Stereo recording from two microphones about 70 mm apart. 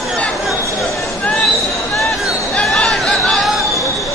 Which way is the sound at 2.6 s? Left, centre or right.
Centre.